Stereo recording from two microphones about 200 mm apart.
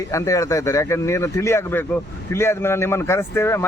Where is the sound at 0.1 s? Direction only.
15° left (ahead or behind).